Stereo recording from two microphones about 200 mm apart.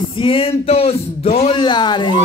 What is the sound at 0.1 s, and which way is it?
Speech, 25° left (ahead or behind).